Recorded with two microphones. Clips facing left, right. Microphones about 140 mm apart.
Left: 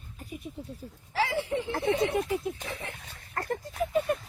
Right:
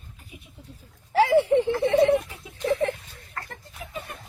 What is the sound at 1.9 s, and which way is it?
Speech, 55° right (ahead or behind).